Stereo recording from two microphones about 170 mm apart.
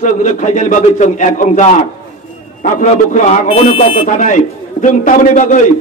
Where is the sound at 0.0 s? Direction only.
45° left (ahead or behind).